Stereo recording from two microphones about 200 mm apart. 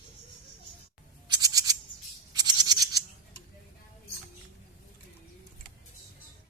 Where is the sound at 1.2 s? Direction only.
20° right (ahead or behind).